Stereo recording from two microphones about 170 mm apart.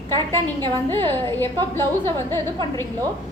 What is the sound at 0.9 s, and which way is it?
A woman's voice, 10° left (ahead or behind).